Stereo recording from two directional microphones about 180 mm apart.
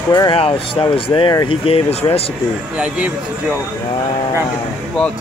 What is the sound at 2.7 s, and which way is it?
Speech, 5° right (ahead or behind).